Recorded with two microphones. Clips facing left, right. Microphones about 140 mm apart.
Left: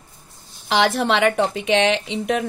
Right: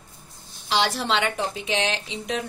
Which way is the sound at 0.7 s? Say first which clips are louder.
Left 5 dB; 60° left (ahead or behind).